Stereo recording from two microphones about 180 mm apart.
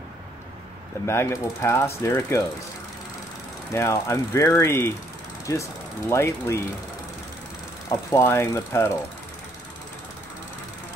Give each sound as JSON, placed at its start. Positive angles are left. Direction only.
{"t": 1.0, "sound": "ratchet", "side_deg": 15}
{"t": 3.7, "sound": "ratchet", "side_deg": 15}
{"t": 7.9, "sound": "ratchet", "side_deg": 15}